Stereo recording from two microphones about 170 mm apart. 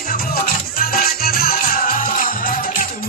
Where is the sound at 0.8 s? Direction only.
60° left (ahead or behind).